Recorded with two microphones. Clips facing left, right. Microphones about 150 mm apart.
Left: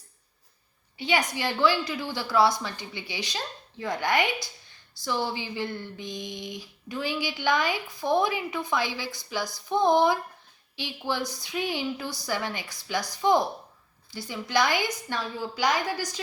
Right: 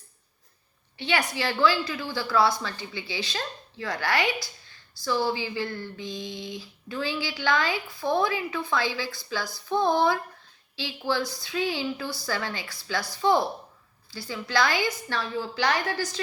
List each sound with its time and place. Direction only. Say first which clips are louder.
0.9 s a woman's voice: even; 15° left (ahead or behind)